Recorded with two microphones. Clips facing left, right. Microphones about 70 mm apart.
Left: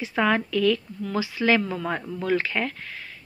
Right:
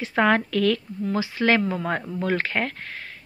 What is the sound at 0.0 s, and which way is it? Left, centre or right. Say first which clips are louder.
Speech: right 2 dB; right.